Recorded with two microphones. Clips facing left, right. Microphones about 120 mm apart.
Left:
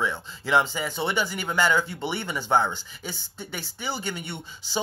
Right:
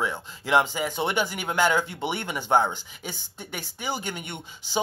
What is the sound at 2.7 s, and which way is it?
Speech, 50° right (ahead or behind).